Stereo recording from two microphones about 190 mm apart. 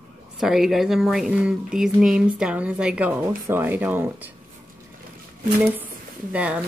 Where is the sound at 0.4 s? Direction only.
Centre (ahead or behind).